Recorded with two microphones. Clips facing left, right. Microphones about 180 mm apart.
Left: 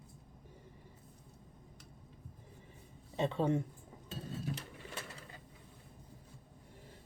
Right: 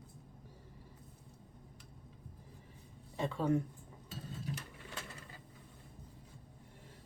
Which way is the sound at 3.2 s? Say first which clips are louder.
Left 1 dB; 25° left (ahead or behind).